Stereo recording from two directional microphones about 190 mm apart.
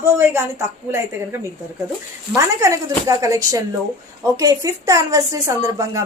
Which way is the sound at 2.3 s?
15° right (ahead or behind).